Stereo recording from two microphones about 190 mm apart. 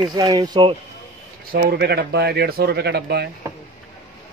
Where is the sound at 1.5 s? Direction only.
60° right (ahead or behind).